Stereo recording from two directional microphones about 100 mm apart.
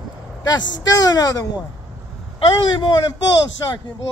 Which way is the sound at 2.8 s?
50° left (ahead or behind).